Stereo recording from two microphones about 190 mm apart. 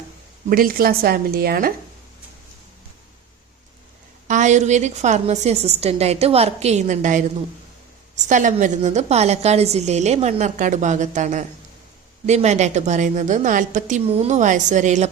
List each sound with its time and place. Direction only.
0.5 s a woman's voice: 50° right (ahead or behind)
4.3 s a woman's voice: 40° right (ahead or behind)